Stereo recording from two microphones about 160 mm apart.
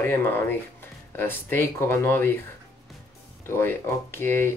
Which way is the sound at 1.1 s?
15° left (ahead or behind).